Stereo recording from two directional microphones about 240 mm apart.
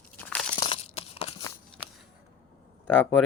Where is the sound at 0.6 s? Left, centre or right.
Left.